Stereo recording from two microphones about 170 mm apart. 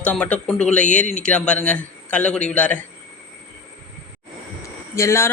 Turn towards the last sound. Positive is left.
turn(degrees=15)  # may be behind; listen again after turning